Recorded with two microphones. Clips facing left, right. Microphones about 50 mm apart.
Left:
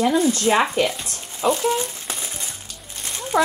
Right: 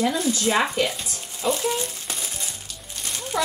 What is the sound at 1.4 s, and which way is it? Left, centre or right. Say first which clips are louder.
Speech: left 4 dB; left.